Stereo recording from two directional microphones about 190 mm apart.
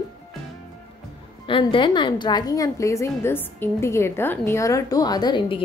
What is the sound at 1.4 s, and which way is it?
A woman's voice, 25° left (ahead or behind).